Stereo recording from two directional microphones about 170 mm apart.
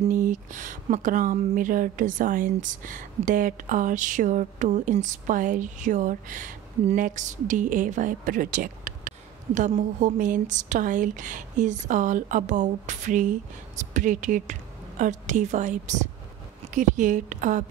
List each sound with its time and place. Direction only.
0.1 s speech: 50° right (ahead or behind)